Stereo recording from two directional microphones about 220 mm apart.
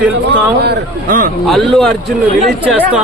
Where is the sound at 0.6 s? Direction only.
45° right (ahead or behind).